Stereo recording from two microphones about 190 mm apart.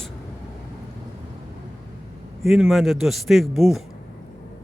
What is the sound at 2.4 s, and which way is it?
Speech, centre (ahead or behind).